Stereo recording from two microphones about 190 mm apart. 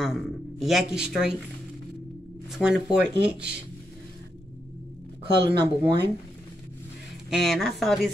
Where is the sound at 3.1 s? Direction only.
60° right (ahead or behind).